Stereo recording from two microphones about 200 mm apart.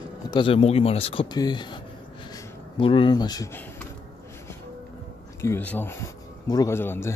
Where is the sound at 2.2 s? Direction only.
25° left (ahead or behind).